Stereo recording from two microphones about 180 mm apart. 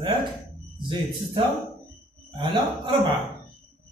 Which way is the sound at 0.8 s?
30° right (ahead or behind).